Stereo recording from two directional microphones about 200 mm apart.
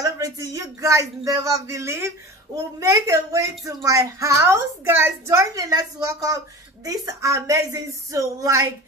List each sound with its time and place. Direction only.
0.0 s a woman's voice: 15° right (ahead or behind)